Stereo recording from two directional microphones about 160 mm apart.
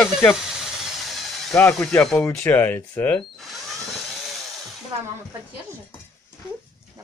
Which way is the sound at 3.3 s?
Centre (ahead or behind).